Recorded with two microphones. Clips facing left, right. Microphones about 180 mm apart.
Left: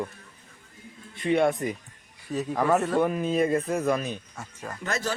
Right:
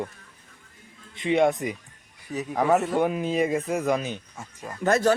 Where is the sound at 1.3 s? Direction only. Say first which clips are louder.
Right 1 dB; 20° right (ahead or behind).